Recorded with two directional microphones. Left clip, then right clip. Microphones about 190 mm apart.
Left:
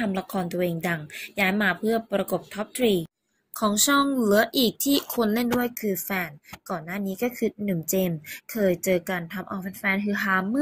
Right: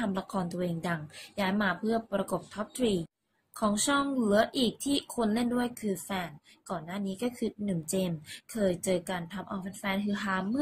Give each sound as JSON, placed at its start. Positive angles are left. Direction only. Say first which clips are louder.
{"t": 0.1, "sound": "a woman's voice", "louder": "left 6 dB", "side_deg": 15}
{"t": 3.5, "sound": "speech", "louder": "left 7 dB", "side_deg": 25}